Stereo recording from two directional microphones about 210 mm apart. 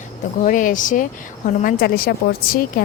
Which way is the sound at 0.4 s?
40° left (ahead or behind).